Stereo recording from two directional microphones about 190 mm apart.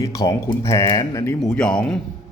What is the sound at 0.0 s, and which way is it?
Speech, 15° left (ahead or behind).